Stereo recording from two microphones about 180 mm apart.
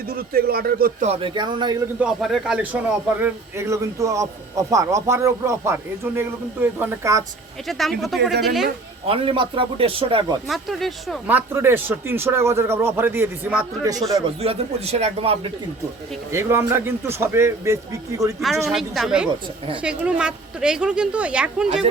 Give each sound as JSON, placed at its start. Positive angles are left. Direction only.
{"t": 0.1, "sound": "speech", "side_deg": -55}
{"t": 1.0, "sound": "a man's voice", "side_deg": -30}
{"t": 2.0, "sound": "speech", "side_deg": 0}
{"t": 7.7, "sound": "speech", "side_deg": 0}
{"t": 9.0, "sound": "a man's voice", "side_deg": -30}
{"t": 10.5, "sound": "speech", "side_deg": 0}
{"t": 11.3, "sound": "speech", "side_deg": -10}
{"t": 14.3, "sound": "speech", "side_deg": -35}
{"t": 16.3, "sound": "speech", "side_deg": -15}
{"t": 18.3, "sound": "speech", "side_deg": 0}